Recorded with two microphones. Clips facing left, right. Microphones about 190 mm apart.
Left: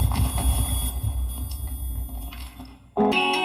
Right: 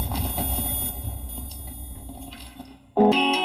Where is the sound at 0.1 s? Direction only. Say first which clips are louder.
Even; 30° right (ahead or behind).